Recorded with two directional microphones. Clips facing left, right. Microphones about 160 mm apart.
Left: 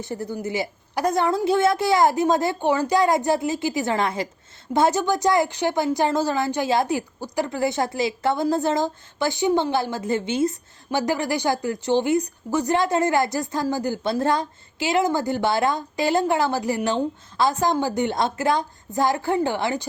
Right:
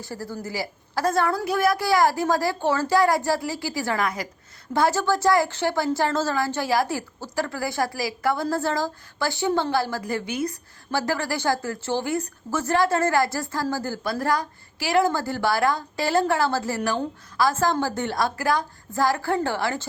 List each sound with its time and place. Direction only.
0.0 s a woman's voice: 20° left (ahead or behind)